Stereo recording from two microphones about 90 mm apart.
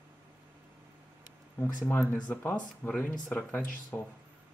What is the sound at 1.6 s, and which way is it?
Speech, 25° left (ahead or behind).